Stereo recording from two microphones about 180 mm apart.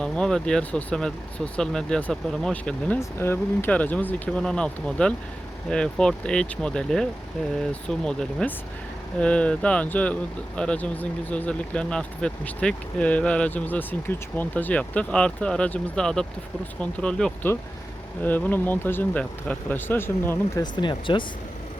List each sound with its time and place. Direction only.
0.0 s speech: 5° left (ahead or behind)
20.7 s speech: 25° left (ahead or behind)